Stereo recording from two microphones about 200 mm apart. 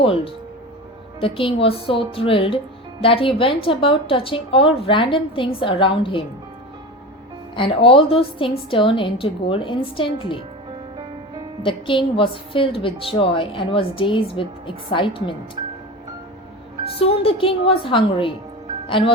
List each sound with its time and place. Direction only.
1.2 s a woman's voice: 25° left (ahead or behind)
7.5 s a woman's voice: 25° left (ahead or behind)
11.6 s a woman's voice: 25° left (ahead or behind)
16.8 s a woman's voice: 30° left (ahead or behind)